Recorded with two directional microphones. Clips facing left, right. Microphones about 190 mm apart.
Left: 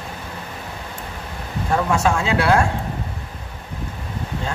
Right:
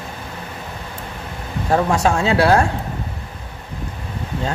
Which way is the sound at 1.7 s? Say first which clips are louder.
Right 2 dB; 35° right (ahead or behind).